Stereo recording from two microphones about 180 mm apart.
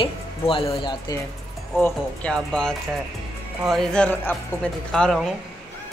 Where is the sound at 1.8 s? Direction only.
5° left (ahead or behind).